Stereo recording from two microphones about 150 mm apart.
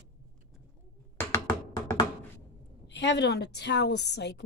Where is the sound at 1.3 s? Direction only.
20° left (ahead or behind).